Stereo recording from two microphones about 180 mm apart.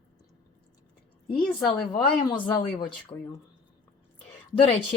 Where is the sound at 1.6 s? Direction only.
25° left (ahead or behind).